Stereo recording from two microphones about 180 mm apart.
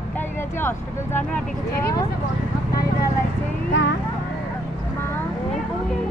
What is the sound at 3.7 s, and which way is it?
Speech, 90° left.